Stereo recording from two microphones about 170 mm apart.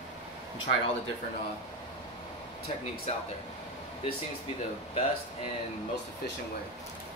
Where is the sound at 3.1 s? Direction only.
40° left (ahead or behind).